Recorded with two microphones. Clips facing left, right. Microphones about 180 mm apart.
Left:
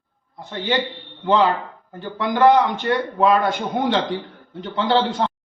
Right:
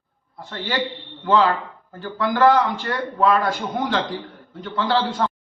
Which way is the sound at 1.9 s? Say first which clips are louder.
Even; 20° left (ahead or behind).